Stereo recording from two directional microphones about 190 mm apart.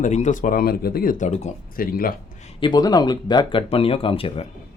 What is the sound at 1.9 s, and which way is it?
Speech, 50° left (ahead or behind).